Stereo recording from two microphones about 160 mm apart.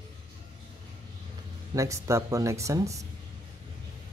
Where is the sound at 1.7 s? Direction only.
20° right (ahead or behind).